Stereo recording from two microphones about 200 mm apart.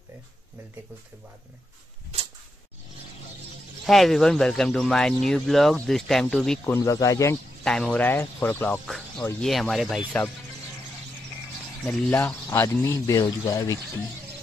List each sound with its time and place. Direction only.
3.8 s speech: centre (ahead or behind)
7.6 s speech: 5° left (ahead or behind)
11.8 s speech: 5° left (ahead or behind)